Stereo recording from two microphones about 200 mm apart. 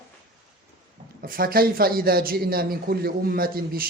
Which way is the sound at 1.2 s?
45° right (ahead or behind).